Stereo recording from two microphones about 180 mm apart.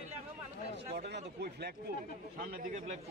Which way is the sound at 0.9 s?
65° right (ahead or behind).